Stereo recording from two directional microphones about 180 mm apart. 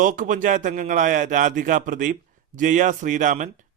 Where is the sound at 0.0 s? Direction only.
45° right (ahead or behind).